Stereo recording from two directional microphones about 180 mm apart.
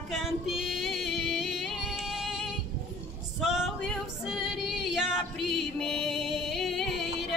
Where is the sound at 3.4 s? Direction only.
5° right (ahead or behind).